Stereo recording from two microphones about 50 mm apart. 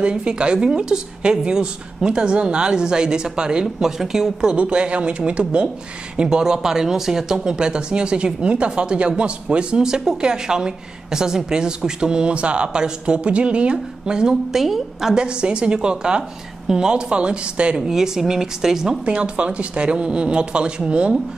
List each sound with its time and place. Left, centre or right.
0.0 s speech: centre
4.6 s a woman's voice: right; by 15.1 s centre
15.1 s a woman's voice: centre
17.8 s speech: centre
19.0 s a woman's voice: right